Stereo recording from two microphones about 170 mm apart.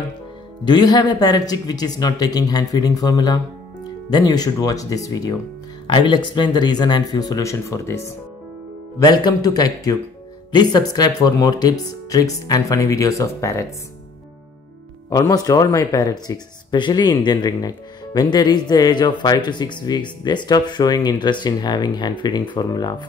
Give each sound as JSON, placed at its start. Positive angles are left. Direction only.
{"t": 0.7, "sound": "speech", "side_deg": 25}
{"t": 9.0, "sound": "speech", "side_deg": 25}
{"t": 15.0, "sound": "speech", "side_deg": 20}